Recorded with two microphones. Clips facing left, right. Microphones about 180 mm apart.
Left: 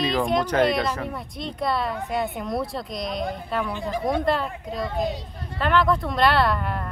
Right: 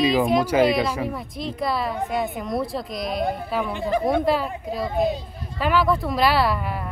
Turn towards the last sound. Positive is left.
turn(degrees=-5)  # may be behind; listen again after turning